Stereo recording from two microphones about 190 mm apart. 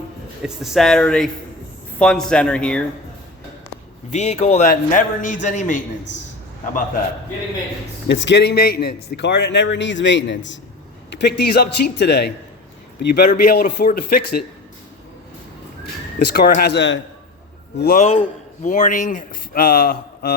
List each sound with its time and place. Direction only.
0.4 s speech: centre (ahead or behind)
4.1 s a man's voice: 35° left (ahead or behind)
8.0 s a man's voice: 70° left (ahead or behind); by 14.4 s 50° left (ahead or behind)
16.1 s a man's voice: 55° left (ahead or behind)
17.7 s speech: 50° left (ahead or behind)
18.0 s speech: 35° left (ahead or behind); by 20.3 s 50° left (ahead or behind)